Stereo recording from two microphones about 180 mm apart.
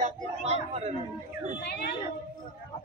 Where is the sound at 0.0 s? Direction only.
35° right (ahead or behind).